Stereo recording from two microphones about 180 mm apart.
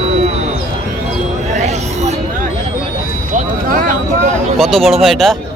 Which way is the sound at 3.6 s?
50° right (ahead or behind).